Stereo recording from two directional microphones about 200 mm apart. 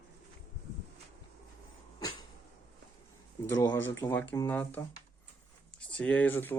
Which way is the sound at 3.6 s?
15° left (ahead or behind).